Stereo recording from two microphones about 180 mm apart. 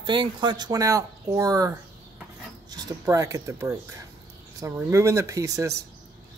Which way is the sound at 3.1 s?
20° right (ahead or behind).